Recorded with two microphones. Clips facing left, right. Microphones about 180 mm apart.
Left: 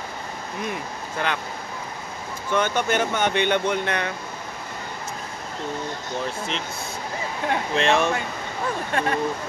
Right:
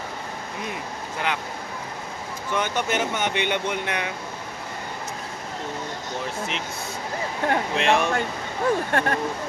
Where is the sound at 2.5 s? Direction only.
15° right (ahead or behind).